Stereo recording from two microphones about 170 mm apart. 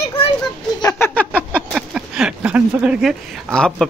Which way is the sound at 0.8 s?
20° left (ahead or behind).